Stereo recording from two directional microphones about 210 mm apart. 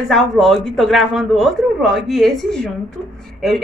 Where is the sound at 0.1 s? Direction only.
Centre (ahead or behind).